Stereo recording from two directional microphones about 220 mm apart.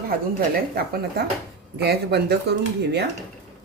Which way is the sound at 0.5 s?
45° right (ahead or behind).